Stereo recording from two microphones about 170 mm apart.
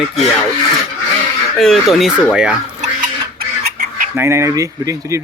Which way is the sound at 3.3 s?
55° right (ahead or behind).